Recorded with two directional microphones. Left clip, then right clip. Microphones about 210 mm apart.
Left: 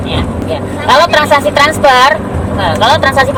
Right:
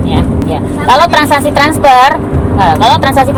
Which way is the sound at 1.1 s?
30° right (ahead or behind).